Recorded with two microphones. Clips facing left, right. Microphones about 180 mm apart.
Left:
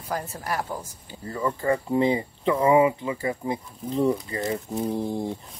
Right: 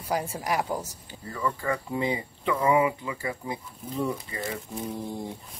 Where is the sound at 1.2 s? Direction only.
35° left (ahead or behind).